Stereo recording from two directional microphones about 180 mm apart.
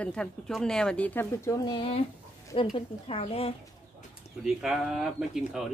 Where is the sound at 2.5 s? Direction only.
35° left (ahead or behind).